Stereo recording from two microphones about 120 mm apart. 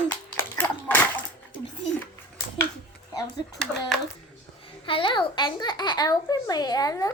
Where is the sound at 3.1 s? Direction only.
30° left (ahead or behind).